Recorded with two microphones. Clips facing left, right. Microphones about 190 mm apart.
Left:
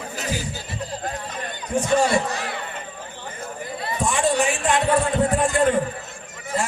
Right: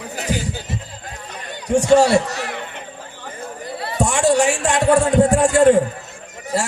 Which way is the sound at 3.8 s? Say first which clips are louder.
Right 4 dB; 70° right (ahead or behind).